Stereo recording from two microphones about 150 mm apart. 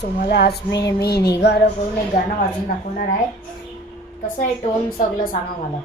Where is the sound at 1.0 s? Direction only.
90° left.